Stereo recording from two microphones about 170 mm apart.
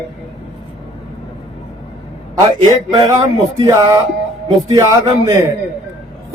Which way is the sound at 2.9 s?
25° right (ahead or behind).